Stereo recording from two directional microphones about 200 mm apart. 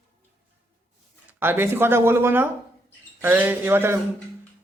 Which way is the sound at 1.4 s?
10° right (ahead or behind).